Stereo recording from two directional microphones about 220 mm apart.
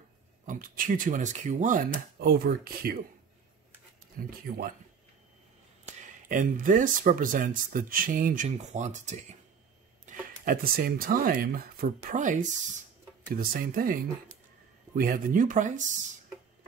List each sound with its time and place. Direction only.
0.5 s speech: 40° right (ahead or behind)
4.2 s speech: 40° right (ahead or behind)
5.9 s speech: 35° right (ahead or behind)
15.0 s speech: 40° right (ahead or behind)